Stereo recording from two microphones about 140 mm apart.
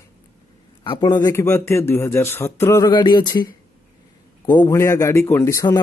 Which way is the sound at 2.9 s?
35° left (ahead or behind).